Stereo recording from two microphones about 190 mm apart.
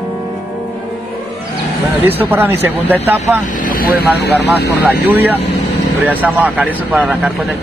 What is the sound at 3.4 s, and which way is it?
Speech, 45° left (ahead or behind).